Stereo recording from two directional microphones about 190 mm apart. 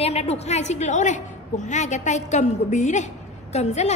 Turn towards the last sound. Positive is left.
turn(degrees=35)  # may be behind; listen again after turning